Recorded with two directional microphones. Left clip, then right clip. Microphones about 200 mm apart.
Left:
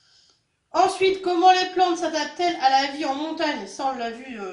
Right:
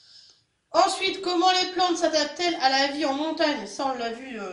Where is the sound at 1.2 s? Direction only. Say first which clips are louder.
Left 4 dB; 50° right (ahead or behind).